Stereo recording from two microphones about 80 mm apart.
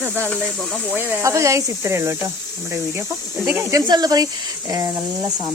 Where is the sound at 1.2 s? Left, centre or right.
Right.